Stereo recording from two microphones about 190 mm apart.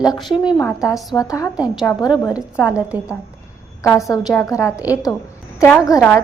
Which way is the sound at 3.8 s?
15° left (ahead or behind).